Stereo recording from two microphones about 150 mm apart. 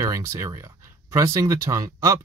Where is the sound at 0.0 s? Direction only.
20° right (ahead or behind).